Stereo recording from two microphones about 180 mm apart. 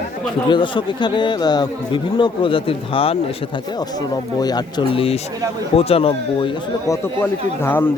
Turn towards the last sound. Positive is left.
turn(degrees=10)  # may be behind; listen again after turning